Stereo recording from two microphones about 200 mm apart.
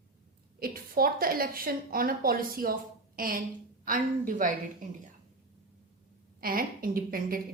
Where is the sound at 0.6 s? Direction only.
45° right (ahead or behind).